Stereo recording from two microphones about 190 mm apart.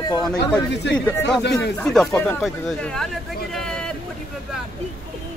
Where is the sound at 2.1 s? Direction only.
10° left (ahead or behind).